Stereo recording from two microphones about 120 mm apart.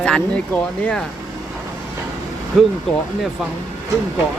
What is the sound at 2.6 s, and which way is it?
Speech, centre (ahead or behind).